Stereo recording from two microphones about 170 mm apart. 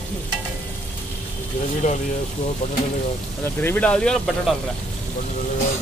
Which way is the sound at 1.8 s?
50° left (ahead or behind).